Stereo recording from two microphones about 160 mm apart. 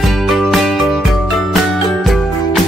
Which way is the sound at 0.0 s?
Centre (ahead or behind).